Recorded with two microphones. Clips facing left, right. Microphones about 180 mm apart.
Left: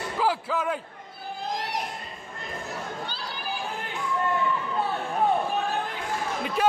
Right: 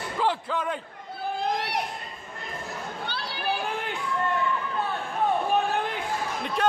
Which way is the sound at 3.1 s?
65° right (ahead or behind).